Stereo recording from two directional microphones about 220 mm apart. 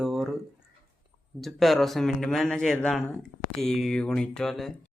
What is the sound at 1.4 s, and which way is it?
Speech, centre (ahead or behind).